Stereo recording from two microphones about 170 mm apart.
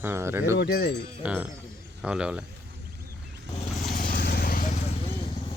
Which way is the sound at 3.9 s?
55° left (ahead or behind).